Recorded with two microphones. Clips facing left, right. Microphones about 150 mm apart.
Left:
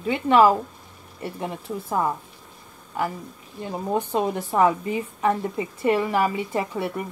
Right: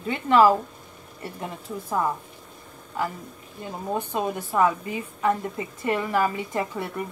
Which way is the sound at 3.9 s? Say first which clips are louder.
Left 3 dB; 20° left (ahead or behind).